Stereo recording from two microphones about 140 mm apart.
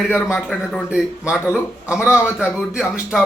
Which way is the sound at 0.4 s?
Centre (ahead or behind).